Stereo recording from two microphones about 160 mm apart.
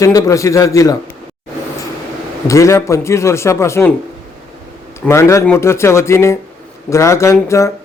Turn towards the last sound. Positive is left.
turn(degrees=20)  # may be behind; listen again after turning